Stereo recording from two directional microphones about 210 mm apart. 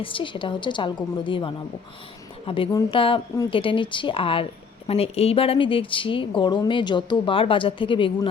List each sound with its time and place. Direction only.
0.0 s a woman's voice: 25° left (ahead or behind)